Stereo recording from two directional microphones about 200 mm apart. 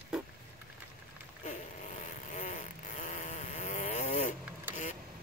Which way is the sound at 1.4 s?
40° left (ahead or behind).